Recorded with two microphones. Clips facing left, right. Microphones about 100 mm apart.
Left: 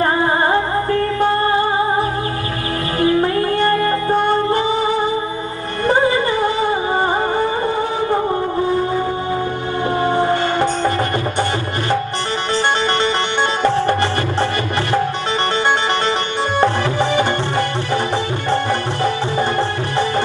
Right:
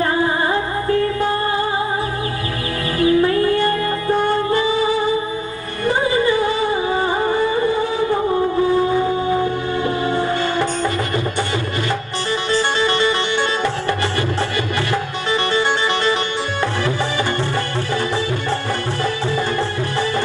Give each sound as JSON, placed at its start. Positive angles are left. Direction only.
{"t": 0.0, "sound": "music", "side_deg": 40}
{"t": 3.0, "sound": "music", "side_deg": 40}
{"t": 10.1, "sound": "music", "side_deg": 25}
{"t": 13.4, "sound": "music", "side_deg": 50}